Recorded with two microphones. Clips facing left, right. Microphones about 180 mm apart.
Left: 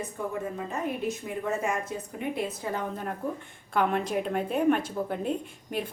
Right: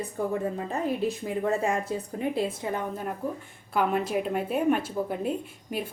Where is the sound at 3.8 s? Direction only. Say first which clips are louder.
Right 1 dB; 5° right (ahead or behind).